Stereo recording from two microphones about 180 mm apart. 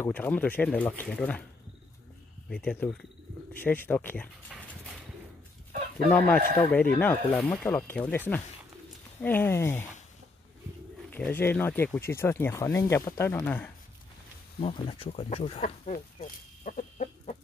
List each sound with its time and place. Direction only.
0.0 s speech: 10° left (ahead or behind)
2.5 s speech: 5° left (ahead or behind)
4.5 s dog: 5° right (ahead or behind)
6.1 s speech: 10° left (ahead or behind)
11.1 s speech: 10° left (ahead or behind)
14.6 s speech: 30° left (ahead or behind)
15.9 s chicken: 50° left (ahead or behind)